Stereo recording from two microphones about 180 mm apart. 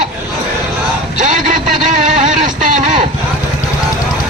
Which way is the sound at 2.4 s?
45° right (ahead or behind).